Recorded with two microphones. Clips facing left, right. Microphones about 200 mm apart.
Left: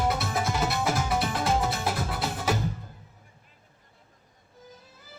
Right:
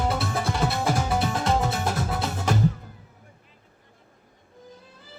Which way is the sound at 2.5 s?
5° left (ahead or behind).